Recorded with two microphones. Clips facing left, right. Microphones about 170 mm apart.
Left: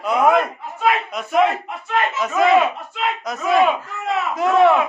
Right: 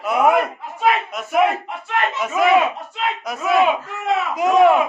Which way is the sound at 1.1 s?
5° right (ahead or behind).